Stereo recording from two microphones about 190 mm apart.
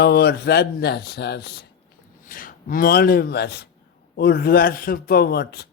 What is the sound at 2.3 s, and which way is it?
Speech, 50° left (ahead or behind).